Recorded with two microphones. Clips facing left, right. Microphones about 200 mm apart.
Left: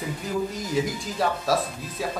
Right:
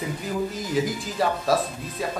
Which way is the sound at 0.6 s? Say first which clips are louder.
Right 1 dB; centre (ahead or behind).